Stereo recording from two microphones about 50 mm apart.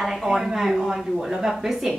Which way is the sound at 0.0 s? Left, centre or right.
Centre.